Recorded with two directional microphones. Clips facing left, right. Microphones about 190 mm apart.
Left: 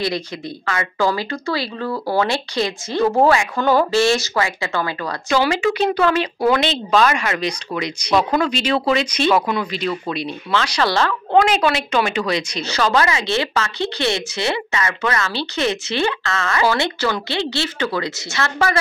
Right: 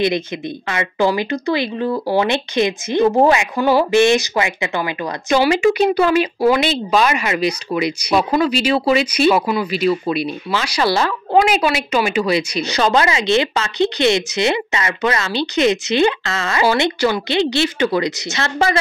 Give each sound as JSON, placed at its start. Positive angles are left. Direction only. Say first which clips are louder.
{"t": 0.7, "sound": "speech", "louder": "right 2 dB", "side_deg": -20}